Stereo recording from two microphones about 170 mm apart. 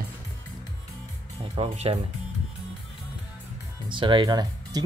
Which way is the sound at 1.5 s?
35° right (ahead or behind).